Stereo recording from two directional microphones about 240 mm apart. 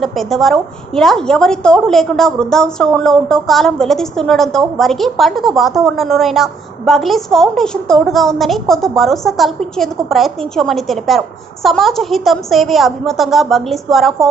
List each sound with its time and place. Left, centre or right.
0.0 s a woman's voice: centre